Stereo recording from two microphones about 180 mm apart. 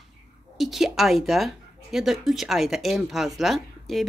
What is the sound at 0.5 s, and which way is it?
Speech, centre (ahead or behind).